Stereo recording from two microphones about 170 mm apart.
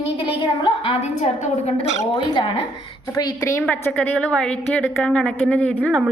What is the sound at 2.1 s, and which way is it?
A woman's voice, 30° left (ahead or behind).